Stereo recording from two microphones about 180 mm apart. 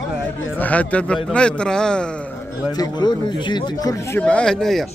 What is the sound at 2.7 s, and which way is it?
Speech, 20° left (ahead or behind).